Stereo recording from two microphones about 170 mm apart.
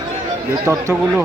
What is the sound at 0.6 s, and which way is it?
Speech, 10° right (ahead or behind).